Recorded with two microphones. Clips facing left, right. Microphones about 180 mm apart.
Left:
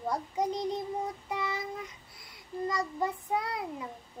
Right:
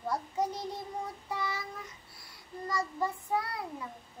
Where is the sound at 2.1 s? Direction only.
20° left (ahead or behind).